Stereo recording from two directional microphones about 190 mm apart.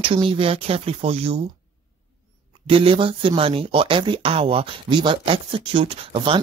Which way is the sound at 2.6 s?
30° right (ahead or behind).